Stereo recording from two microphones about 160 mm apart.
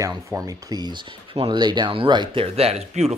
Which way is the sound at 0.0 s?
20° right (ahead or behind).